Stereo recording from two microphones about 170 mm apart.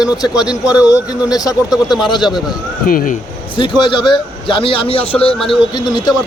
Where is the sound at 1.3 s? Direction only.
20° left (ahead or behind).